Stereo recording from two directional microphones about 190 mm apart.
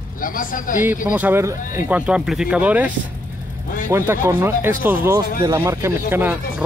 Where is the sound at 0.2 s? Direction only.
45° left (ahead or behind).